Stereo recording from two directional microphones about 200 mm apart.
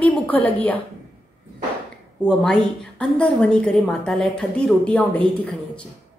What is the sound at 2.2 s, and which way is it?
A woman's voice, 5° left (ahead or behind).